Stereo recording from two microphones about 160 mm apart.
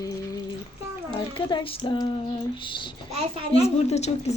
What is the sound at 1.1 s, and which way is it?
Speech, 30° left (ahead or behind).